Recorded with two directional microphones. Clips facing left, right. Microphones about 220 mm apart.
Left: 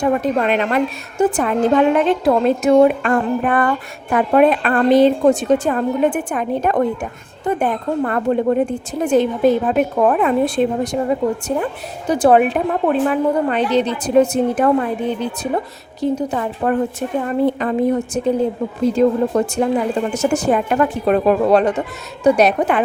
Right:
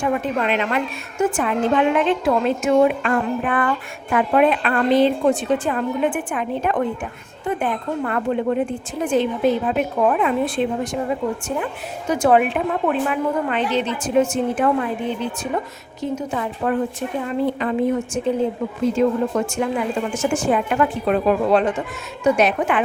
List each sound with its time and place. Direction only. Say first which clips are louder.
0.0 s a woman's voice: left 4 dB; 40° left (ahead or behind)